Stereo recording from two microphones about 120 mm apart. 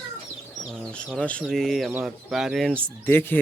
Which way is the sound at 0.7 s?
5° left (ahead or behind).